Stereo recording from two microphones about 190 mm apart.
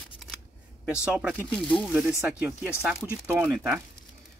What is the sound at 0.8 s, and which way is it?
Speech, 5° right (ahead or behind).